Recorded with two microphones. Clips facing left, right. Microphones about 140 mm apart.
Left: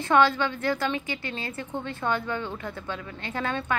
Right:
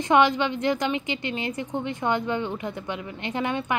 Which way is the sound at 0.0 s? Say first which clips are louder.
Right 2 dB; 20° right (ahead or behind).